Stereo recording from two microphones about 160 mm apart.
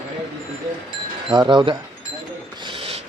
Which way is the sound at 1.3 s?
30° right (ahead or behind).